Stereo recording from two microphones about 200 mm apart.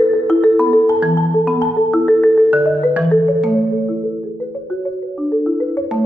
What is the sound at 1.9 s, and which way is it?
Music, 5° left (ahead or behind).